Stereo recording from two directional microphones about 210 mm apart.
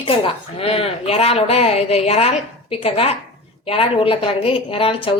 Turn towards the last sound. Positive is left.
turn(degrees=25)  # may be behind; listen again after turning